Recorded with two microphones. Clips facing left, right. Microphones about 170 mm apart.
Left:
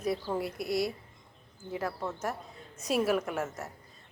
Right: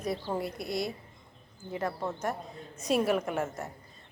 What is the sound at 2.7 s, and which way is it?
Speech, centre (ahead or behind).